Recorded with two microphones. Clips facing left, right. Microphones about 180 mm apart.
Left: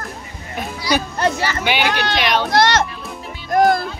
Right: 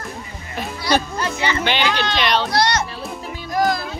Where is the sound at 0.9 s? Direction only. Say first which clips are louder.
Right 1 dB; 55° right (ahead or behind).